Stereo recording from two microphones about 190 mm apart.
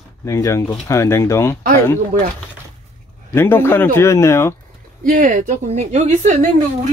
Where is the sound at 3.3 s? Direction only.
10° left (ahead or behind).